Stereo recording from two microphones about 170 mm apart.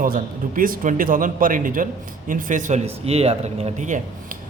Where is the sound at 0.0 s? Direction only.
55° right (ahead or behind).